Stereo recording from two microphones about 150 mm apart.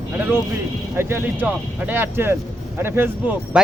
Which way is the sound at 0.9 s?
15° right (ahead or behind).